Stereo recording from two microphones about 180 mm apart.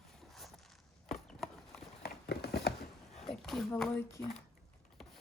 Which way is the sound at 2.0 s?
60° left (ahead or behind).